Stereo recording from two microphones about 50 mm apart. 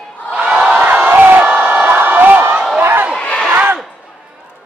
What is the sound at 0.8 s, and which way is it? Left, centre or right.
Crowd, right.